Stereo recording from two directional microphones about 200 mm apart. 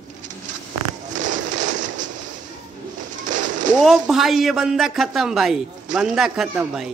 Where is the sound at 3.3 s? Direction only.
40° right (ahead or behind).